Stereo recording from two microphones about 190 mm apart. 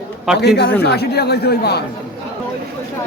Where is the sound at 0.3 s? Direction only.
60° left (ahead or behind).